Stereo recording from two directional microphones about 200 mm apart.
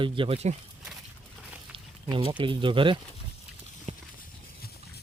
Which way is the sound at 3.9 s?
35° right (ahead or behind).